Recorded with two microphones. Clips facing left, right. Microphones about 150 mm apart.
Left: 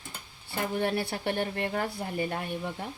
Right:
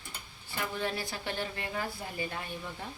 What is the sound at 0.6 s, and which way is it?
Speech, 55° left (ahead or behind).